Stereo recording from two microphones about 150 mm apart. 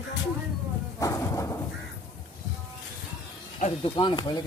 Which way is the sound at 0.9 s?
20° left (ahead or behind).